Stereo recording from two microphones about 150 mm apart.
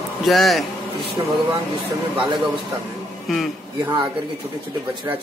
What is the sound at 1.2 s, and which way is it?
Speech, 30° right (ahead or behind).